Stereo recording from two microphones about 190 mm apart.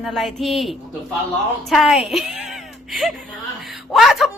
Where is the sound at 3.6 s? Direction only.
Centre (ahead or behind).